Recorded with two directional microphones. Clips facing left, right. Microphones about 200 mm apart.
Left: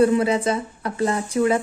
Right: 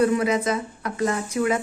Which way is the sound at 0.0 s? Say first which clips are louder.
Left 3 dB; 30° left (ahead or behind).